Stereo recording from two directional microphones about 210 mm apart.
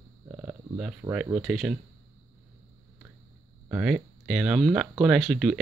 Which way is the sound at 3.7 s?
5° right (ahead or behind).